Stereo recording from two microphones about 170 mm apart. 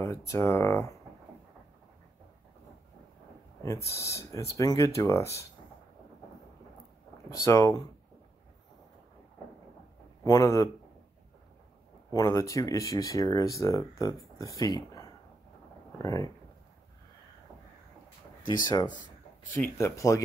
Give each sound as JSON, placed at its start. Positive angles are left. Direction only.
{"t": 0.0, "sound": "speech", "side_deg": 15}
{"t": 3.6, "sound": "speech", "side_deg": 15}
{"t": 7.2, "sound": "speech", "side_deg": 15}
{"t": 10.2, "sound": "speech", "side_deg": 20}
{"t": 12.1, "sound": "speech", "side_deg": 20}
{"t": 19.6, "sound": "speech", "side_deg": 15}